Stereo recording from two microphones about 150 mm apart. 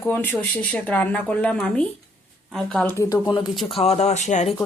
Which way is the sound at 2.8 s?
20° left (ahead or behind).